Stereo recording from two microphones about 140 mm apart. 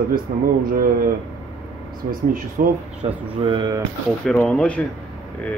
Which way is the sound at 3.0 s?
35° right (ahead or behind).